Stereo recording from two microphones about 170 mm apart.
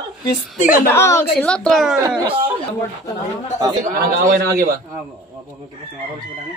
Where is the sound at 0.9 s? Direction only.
15° left (ahead or behind).